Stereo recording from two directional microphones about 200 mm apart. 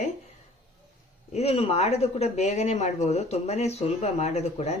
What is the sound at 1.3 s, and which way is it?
Speech, 30° left (ahead or behind).